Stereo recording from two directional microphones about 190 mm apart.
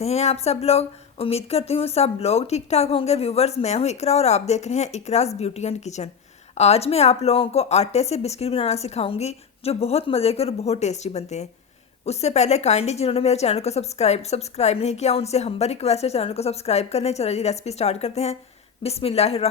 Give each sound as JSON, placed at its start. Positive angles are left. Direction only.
{"t": 0.0, "sound": "a woman's voice", "side_deg": 35}